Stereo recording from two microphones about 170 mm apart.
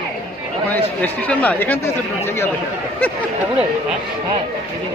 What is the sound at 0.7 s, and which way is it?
Speech, 10° left (ahead or behind).